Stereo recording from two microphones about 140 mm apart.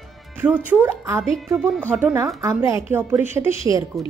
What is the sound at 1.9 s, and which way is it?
Speech, 10° right (ahead or behind).